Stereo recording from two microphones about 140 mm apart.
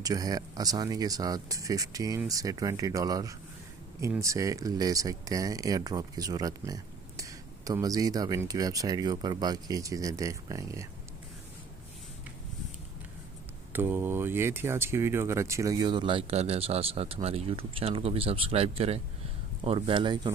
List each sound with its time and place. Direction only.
0.0 s speech: 25° right (ahead or behind)
13.7 s speech: 15° right (ahead or behind); by 20.2 s 35° right (ahead or behind)